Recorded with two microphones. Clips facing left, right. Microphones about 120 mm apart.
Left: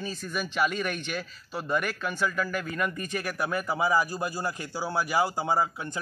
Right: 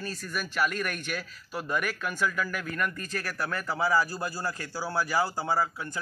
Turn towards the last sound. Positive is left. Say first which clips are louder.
# left 2 dB
turn(degrees=20)  # may be behind; listen again after turning